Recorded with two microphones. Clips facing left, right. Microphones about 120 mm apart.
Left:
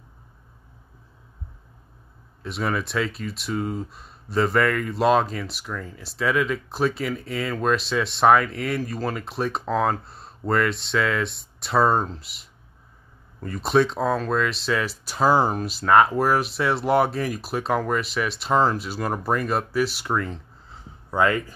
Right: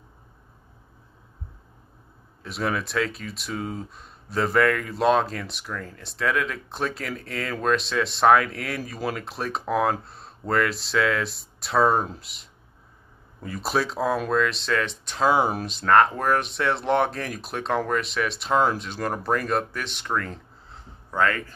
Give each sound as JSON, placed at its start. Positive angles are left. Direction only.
{"t": 2.4, "sound": "speech", "side_deg": 0}
{"t": 21.2, "sound": "a man's voice", "side_deg": 15}